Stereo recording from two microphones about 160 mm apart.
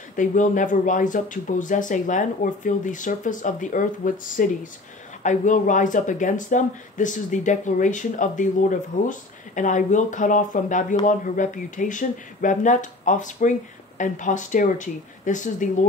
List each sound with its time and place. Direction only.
0.1 s speech: 55° left (ahead or behind)